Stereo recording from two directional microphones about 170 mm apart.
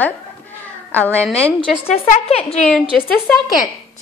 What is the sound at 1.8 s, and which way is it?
Speech, 35° left (ahead or behind).